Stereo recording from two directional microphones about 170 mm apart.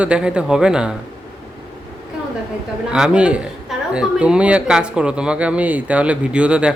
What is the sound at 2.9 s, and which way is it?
Speech, 5° right (ahead or behind).